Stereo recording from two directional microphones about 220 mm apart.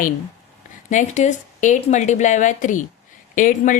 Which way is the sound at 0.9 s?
35° left (ahead or behind).